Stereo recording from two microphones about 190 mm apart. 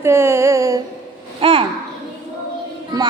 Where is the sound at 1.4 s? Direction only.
30° right (ahead or behind).